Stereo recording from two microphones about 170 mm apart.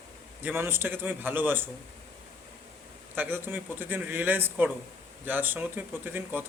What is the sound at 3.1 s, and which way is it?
Speech, 10° right (ahead or behind).